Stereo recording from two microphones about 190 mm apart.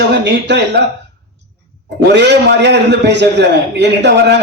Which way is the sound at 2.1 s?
65° right (ahead or behind).